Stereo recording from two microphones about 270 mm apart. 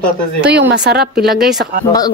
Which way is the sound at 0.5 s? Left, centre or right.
Right.